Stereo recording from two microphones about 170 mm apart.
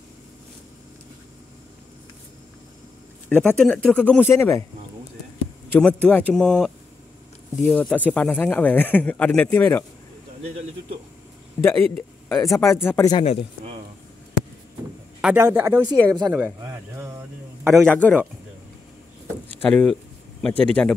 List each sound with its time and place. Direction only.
3.3 s speech: 10° left (ahead or behind)
5.7 s speech: 5° left (ahead or behind)
7.7 s speech: 10° left (ahead or behind)
11.6 s speech: 10° left (ahead or behind)
13.2 s speech: 35° left (ahead or behind)
15.4 s a woman's voice: 15° right (ahead or behind)
16.3 s a sound: 15° right (ahead or behind)
17.7 s speech: 10° left (ahead or behind)
19.6 s speech: 5° left (ahead or behind)